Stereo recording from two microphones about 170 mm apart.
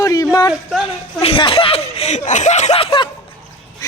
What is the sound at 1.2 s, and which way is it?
Speech, 30° left (ahead or behind).